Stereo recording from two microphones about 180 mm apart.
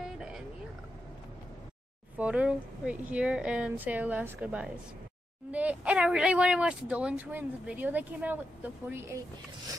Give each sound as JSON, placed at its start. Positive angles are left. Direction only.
{"t": 0.0, "sound": "boat", "side_deg": 0}
{"t": 2.1, "sound": "speech", "side_deg": -5}